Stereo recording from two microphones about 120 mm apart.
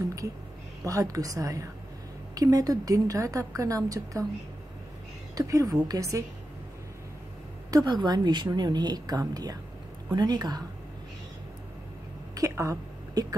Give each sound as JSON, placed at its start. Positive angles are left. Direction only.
{"t": 0.8, "sound": "a woman's voice", "side_deg": -30}
{"t": 5.3, "sound": "a woman's voice", "side_deg": -30}
{"t": 7.7, "sound": "a woman's voice", "side_deg": -35}
{"t": 12.4, "sound": "a sound", "side_deg": -25}